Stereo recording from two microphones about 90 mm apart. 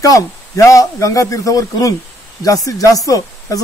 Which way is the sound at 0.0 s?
35° left (ahead or behind).